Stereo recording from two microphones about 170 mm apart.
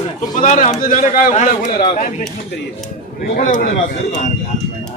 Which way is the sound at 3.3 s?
50° left (ahead or behind).